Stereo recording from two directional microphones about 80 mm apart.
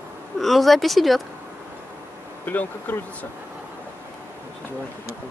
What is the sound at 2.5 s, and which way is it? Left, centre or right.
Speech, left.